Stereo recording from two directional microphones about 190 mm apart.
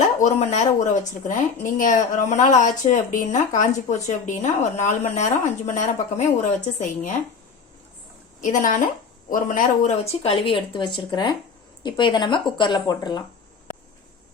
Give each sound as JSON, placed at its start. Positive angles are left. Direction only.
{"t": 0.2, "sound": "speech", "side_deg": 40}
{"t": 8.4, "sound": "a woman's voice", "side_deg": 45}